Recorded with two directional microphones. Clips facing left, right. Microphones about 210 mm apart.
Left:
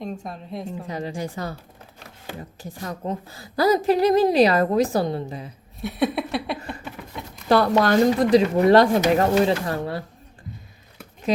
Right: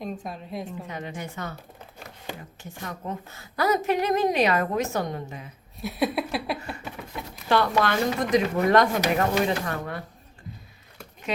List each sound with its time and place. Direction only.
0.0 s speech: centre (ahead or behind)
0.9 s a woman's voice: 35° left (ahead or behind)
2.6 s a woman's voice: 35° left (ahead or behind)
5.8 s speech: centre (ahead or behind)
7.4 s a woman's voice: 40° left (ahead or behind)